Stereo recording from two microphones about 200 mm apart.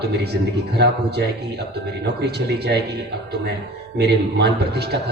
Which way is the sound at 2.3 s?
55° right (ahead or behind).